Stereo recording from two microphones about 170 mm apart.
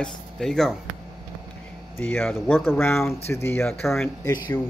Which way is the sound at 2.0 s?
5° left (ahead or behind).